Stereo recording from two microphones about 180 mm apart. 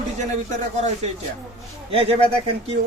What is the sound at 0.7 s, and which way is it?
Speech, 40° right (ahead or behind).